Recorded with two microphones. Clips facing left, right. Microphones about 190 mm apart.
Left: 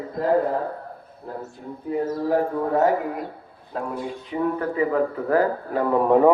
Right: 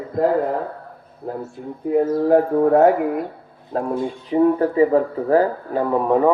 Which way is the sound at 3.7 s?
45° right (ahead or behind).